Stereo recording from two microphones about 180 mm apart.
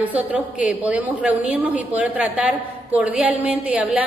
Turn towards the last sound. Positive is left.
turn(degrees=-5)  # may be behind; listen again after turning